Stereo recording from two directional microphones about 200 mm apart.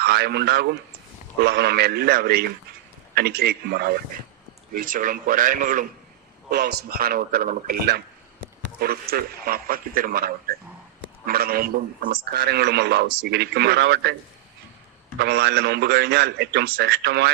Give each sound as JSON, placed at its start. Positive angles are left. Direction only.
{"t": 0.0, "sound": "a man's voice", "side_deg": -55}
{"t": 6.5, "sound": "a man's voice", "side_deg": -50}
{"t": 15.2, "sound": "a man's voice", "side_deg": -55}